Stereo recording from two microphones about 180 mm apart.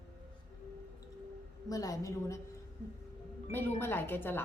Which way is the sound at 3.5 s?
10° left (ahead or behind).